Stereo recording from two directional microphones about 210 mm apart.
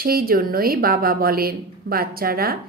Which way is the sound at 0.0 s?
45° right (ahead or behind).